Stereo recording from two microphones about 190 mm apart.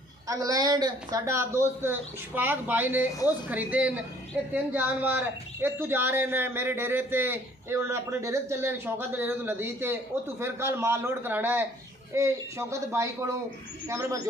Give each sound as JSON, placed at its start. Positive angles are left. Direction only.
{"t": 0.3, "sound": "speech", "side_deg": -20}